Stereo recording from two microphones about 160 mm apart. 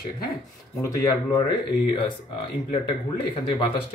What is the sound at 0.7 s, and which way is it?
Speech, 25° left (ahead or behind).